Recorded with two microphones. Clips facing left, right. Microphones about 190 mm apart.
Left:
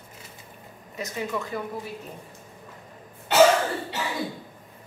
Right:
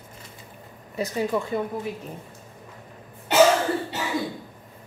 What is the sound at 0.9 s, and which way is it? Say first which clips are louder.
Speech: right 5 dB; 30° right (ahead or behind).